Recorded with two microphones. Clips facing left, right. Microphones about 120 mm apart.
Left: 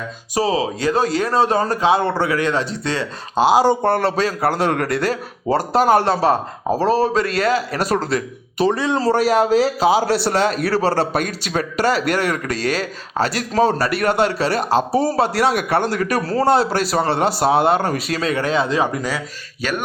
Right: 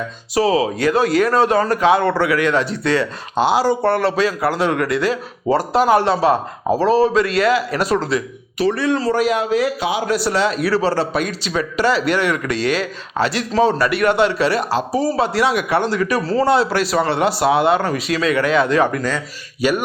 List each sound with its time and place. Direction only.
0.3 s speech: 30° left (ahead or behind)
3.8 s a man's voice: 40° left (ahead or behind)
8.6 s speech: 20° left (ahead or behind)
9.0 s speech: 35° left (ahead or behind)
10.3 s a man's voice: 45° left (ahead or behind); by 18.8 s 30° left (ahead or behind)
18.8 s speech: 15° left (ahead or behind)
19.6 s speech: 10° right (ahead or behind)